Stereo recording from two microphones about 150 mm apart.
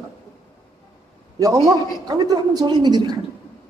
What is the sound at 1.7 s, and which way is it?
A man's voice, 25° right (ahead or behind).